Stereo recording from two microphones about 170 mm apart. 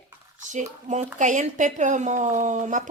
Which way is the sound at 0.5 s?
45° right (ahead or behind).